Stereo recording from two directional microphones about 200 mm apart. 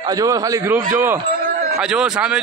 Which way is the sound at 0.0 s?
20° right (ahead or behind).